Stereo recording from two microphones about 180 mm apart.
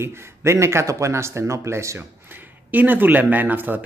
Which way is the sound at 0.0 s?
15° right (ahead or behind).